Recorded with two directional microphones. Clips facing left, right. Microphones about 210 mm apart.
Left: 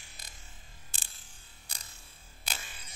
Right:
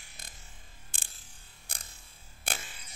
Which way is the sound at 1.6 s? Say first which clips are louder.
Right 3 dB; 55° right (ahead or behind).